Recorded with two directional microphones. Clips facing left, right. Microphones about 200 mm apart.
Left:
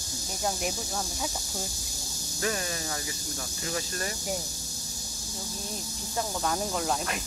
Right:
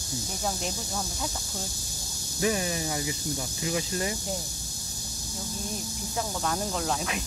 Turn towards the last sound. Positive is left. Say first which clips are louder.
# even
turn(degrees=0)  # may be behind; listen again after turning